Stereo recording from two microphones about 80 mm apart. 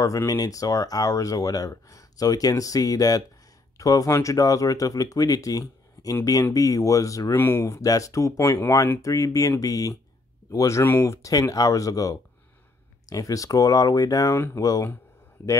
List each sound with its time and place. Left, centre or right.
0.3 s speech: left
7.3 s speech: left
11.2 s speech: left